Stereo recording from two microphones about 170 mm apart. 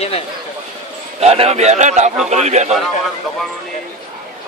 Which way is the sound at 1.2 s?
40° right (ahead or behind).